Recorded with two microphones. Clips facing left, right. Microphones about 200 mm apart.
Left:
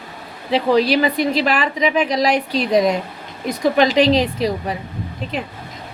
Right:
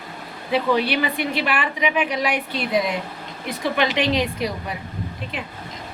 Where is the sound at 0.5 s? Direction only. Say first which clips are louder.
Left 5 dB; 35° left (ahead or behind).